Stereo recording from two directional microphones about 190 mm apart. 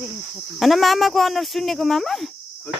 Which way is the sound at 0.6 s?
Centre (ahead or behind).